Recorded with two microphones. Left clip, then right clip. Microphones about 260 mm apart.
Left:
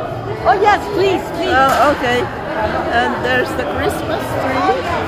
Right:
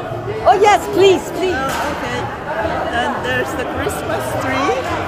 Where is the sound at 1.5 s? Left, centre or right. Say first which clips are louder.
Left 12 dB; centre.